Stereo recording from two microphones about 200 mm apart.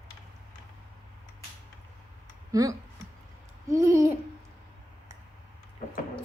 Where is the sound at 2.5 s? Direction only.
20° right (ahead or behind).